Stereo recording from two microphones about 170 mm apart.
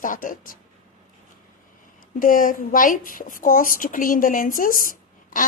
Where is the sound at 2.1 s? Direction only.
55° left (ahead or behind).